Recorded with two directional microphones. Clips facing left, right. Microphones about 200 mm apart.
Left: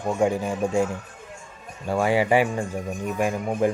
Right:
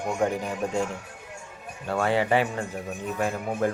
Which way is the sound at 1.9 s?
10° left (ahead or behind).